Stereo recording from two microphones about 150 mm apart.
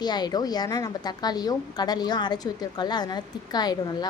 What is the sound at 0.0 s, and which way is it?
A woman's voice, 30° left (ahead or behind).